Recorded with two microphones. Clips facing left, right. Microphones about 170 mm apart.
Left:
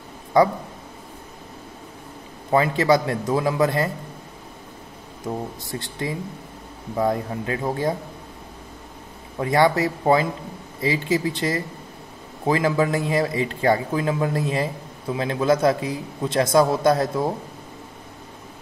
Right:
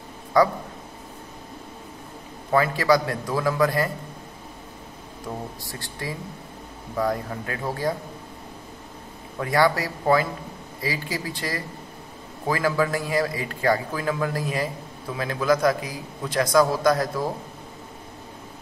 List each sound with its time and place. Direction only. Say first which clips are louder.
0.3 s a man's voice: left 2 dB; 20° left (ahead or behind)
2.5 s a man's voice: left 2 dB; 20° left (ahead or behind)
5.2 s a man's voice: left 5 dB; 20° left (ahead or behind)
9.4 s a man's voice: left 3 dB; 20° left (ahead or behind)